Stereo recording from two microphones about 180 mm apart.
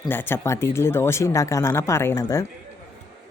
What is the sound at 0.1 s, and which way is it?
Speech, 10° left (ahead or behind).